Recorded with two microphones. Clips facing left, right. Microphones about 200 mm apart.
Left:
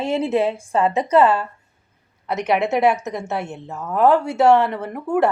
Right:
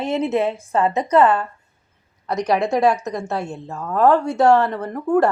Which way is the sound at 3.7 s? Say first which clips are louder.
Even; 5° left (ahead or behind).